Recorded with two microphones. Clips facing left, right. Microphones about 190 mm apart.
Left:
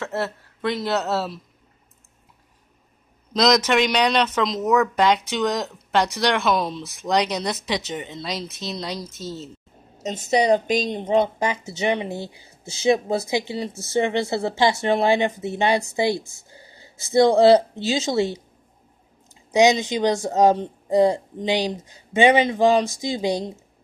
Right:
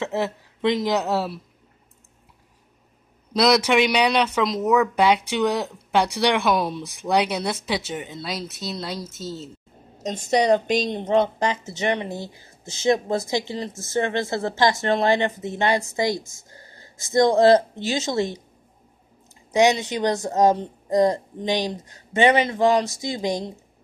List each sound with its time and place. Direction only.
0.0 s speech: 15° right (ahead or behind)
3.3 s a woman's voice: 10° right (ahead or behind)
10.3 s speech: 10° left (ahead or behind)
11.9 s speech: 20° left (ahead or behind)
16.5 s a sound: 10° left (ahead or behind)
17.8 s speech: 15° left (ahead or behind)
19.5 s speech: 15° left (ahead or behind)